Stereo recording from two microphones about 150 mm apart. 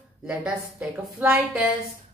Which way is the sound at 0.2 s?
5° right (ahead or behind).